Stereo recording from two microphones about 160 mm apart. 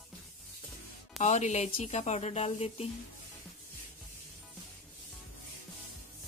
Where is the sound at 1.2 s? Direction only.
45° left (ahead or behind).